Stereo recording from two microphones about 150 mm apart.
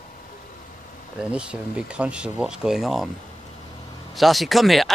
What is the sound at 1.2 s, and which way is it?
Speech, 5° right (ahead or behind).